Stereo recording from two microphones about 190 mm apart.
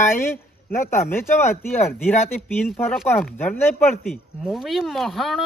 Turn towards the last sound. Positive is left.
turn(degrees=0)  # may be behind; listen again after turning